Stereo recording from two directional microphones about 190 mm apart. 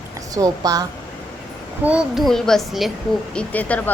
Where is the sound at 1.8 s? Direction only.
5° right (ahead or behind).